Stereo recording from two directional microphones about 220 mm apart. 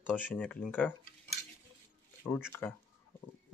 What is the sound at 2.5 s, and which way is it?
Speech, 10° left (ahead or behind).